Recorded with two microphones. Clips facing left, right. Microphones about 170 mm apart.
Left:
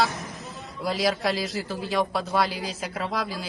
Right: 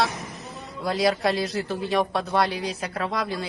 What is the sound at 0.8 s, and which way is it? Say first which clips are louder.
A man's voice: right 2 dB; centre (ahead or behind).